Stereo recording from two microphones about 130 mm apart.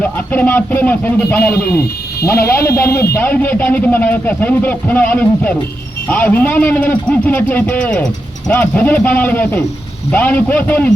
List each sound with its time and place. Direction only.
0.0 s a man's voice: 15° left (ahead or behind)